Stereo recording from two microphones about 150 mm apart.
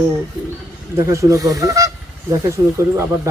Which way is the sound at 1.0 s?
20° right (ahead or behind).